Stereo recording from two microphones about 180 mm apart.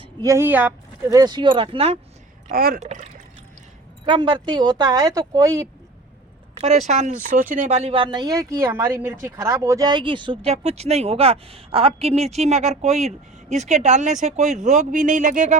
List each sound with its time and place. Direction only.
0.0 s a woman's voice: 20° right (ahead or behind)
1.1 s speech: 25° right (ahead or behind)
2.5 s speech: 55° right (ahead or behind)
2.8 s speech: 40° right (ahead or behind)
4.0 s speech: 25° right (ahead or behind)
6.6 s speech: 40° right (ahead or behind)